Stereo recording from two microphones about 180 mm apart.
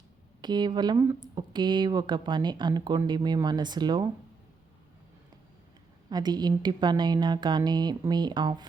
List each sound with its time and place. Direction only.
0.4 s speech: 25° right (ahead or behind)
6.1 s speech: 25° right (ahead or behind)